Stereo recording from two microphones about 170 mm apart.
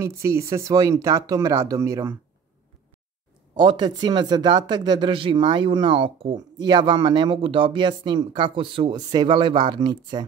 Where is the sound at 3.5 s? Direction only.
25° right (ahead or behind).